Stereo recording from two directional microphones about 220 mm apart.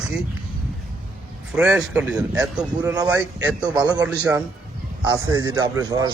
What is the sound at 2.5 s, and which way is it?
Speech, 15° right (ahead or behind).